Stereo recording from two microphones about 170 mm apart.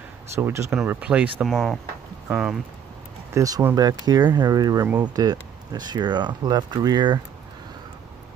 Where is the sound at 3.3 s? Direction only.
20° right (ahead or behind).